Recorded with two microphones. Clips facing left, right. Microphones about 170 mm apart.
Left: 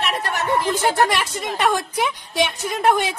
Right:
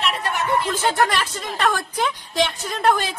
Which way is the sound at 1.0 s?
15° left (ahead or behind).